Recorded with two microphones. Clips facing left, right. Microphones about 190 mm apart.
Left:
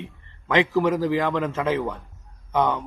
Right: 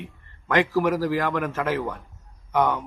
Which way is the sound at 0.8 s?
20° left (ahead or behind).